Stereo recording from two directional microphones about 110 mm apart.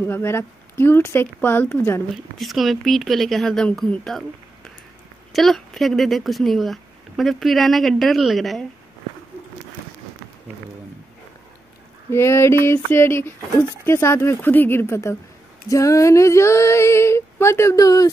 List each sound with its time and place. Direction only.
0.0 s female singing: 20° left (ahead or behind)
2.3 s speech: centre (ahead or behind)
5.3 s speech: centre (ahead or behind)
12.1 s female singing: 25° left (ahead or behind)